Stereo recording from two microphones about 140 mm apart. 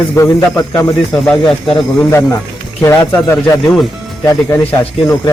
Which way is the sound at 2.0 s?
20° left (ahead or behind).